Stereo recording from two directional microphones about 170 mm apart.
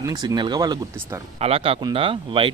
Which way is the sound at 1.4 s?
35° right (ahead or behind).